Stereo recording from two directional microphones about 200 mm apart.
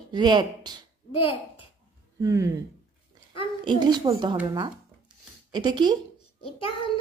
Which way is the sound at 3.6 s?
20° right (ahead or behind).